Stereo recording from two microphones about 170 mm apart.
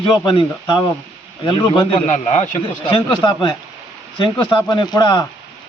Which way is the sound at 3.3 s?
25° left (ahead or behind).